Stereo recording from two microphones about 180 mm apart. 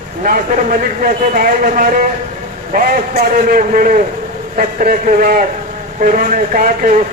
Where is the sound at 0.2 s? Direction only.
50° right (ahead or behind).